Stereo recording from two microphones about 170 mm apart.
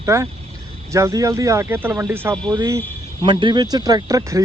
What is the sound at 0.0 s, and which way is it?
Speech, 15° right (ahead or behind).